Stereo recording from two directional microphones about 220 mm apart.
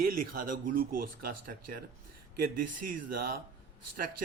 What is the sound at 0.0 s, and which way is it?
Speech, 40° right (ahead or behind).